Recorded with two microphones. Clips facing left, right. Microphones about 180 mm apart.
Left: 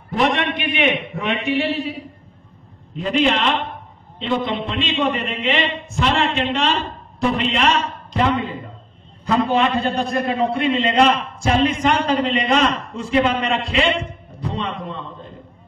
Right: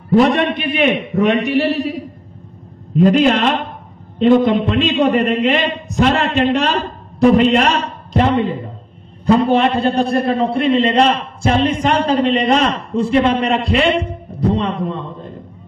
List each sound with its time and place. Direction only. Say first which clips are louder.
0.1 s a man's voice: right 7 dB; 35° right (ahead or behind)
9.8 s a man's voice: right 5 dB; 35° right (ahead or behind)